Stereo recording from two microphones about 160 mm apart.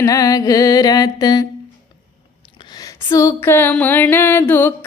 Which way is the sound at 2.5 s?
25° left (ahead or behind).